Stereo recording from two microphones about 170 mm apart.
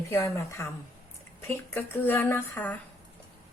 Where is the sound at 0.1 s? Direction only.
15° left (ahead or behind).